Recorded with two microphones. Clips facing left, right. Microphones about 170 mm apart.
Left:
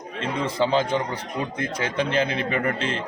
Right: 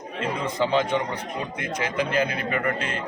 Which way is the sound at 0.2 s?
30° left (ahead or behind).